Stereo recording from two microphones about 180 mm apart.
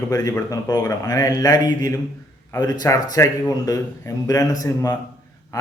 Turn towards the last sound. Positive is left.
turn(degrees=20)  # may be behind; listen again after turning